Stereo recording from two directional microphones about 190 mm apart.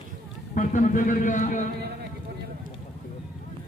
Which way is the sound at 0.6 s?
45° left (ahead or behind).